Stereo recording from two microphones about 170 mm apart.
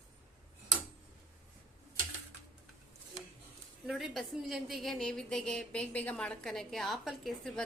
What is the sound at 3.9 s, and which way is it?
A woman's voice, centre (ahead or behind).